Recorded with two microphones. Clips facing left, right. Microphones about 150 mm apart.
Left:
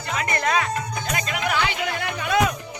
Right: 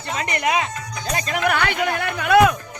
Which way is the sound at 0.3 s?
15° right (ahead or behind).